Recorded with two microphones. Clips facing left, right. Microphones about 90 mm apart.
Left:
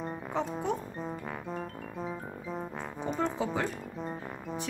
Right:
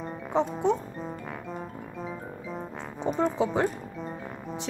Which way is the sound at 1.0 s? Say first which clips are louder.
Right 1 dB; centre (ahead or behind).